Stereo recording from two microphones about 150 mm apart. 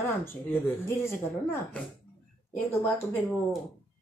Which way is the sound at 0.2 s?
15° left (ahead or behind).